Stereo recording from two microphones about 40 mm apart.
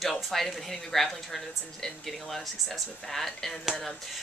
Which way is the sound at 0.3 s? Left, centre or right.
Centre.